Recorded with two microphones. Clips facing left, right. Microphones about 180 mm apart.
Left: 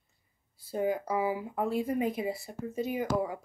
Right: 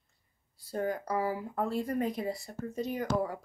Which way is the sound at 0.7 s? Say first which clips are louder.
Left 3 dB; 5° left (ahead or behind).